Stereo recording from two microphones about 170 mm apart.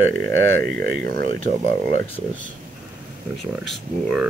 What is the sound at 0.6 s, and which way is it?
Speech, 60° right (ahead or behind).